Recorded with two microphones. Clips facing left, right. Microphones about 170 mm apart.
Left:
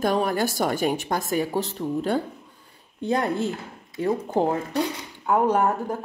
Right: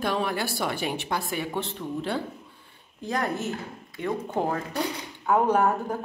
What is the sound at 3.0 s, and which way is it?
Speech, 30° left (ahead or behind).